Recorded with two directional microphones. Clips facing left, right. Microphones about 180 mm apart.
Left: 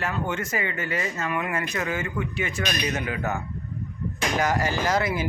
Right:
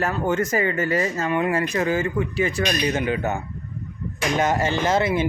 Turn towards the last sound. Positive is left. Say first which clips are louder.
# right 4 dB
turn(degrees=-25)  # may be behind; listen again after turning